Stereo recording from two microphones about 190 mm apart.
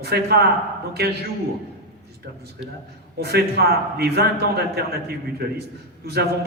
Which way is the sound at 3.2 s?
55° right (ahead or behind).